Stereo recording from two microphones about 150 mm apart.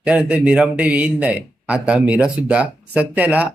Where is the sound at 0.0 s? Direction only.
5° right (ahead or behind).